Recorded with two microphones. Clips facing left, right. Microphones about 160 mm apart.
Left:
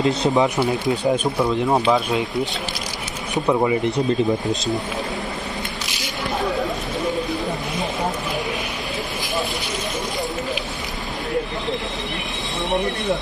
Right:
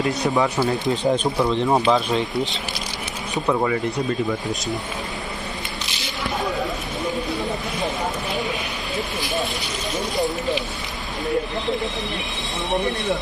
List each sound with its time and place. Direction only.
0.0 s speech: 20° left (ahead or behind)
0.8 s speech: 5° left (ahead or behind)
3.4 s speech: 15° left (ahead or behind)